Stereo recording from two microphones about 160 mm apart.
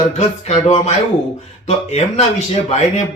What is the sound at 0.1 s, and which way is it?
Speech, 45° left (ahead or behind).